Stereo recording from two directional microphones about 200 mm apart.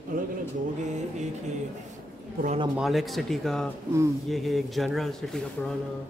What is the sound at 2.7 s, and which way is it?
A woman's voice, centre (ahead or behind).